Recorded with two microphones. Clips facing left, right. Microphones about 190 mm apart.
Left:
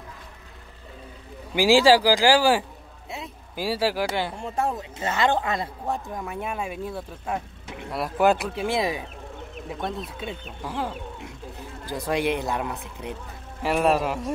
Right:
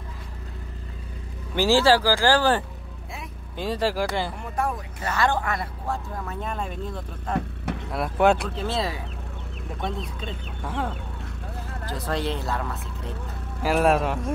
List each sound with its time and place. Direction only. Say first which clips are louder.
1.5 s speech: left 2 dB; 10° left (ahead or behind)
4.4 s speech: left 1 dB; 25° left (ahead or behind); by 8.6 s centre (ahead or behind)
8.6 s speech: left 3 dB; 15° left (ahead or behind)
9.8 s speech: right 1 dB; centre (ahead or behind)
13.8 s speech: left 1 dB; centre (ahead or behind)